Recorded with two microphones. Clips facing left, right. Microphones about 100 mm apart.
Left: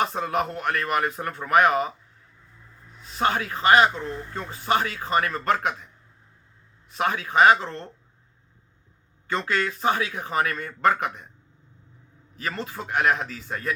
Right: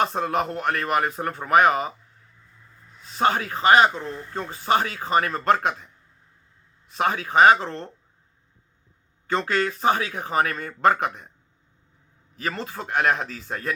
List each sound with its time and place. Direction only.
0.0 s speech: 35° right (ahead or behind)
3.2 s speech: 35° right (ahead or behind)
6.9 s speech: 35° right (ahead or behind)
9.2 s speech: 35° right (ahead or behind)
12.4 s speech: 35° right (ahead or behind)